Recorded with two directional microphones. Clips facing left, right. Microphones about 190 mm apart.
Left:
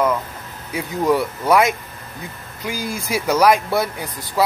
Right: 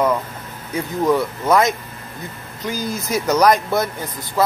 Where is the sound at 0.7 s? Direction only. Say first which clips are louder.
Right 1 dB; 10° left (ahead or behind).